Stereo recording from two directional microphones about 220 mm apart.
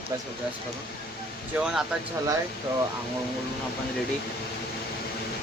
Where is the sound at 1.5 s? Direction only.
5° right (ahead or behind).